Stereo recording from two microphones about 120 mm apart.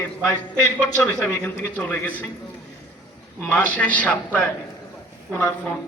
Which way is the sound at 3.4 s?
15° left (ahead or behind).